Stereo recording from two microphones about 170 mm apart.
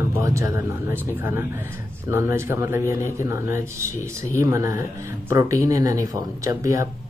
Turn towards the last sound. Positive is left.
turn(degrees=-20)  # may be behind; listen again after turning